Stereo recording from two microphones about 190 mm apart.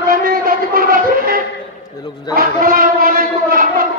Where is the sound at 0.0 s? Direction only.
50° right (ahead or behind).